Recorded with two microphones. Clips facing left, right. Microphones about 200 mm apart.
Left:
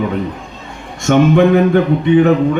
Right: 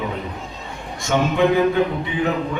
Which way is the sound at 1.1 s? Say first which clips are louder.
Left 8 dB; 65° left (ahead or behind).